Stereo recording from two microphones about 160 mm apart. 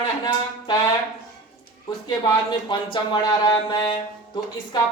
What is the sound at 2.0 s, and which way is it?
Speech, 25° left (ahead or behind).